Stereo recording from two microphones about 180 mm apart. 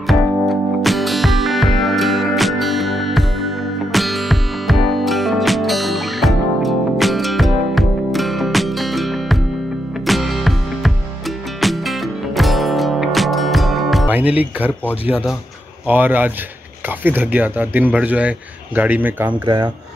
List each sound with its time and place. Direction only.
0.0 s music: centre (ahead or behind)
15.0 s speech: 10° right (ahead or behind)
19.4 s speech: 25° right (ahead or behind)